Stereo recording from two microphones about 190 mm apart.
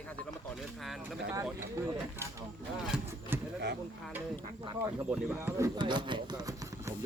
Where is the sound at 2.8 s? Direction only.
5° right (ahead or behind).